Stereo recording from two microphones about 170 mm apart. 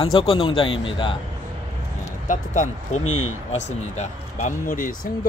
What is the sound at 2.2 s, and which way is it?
Speech, 45° left (ahead or behind).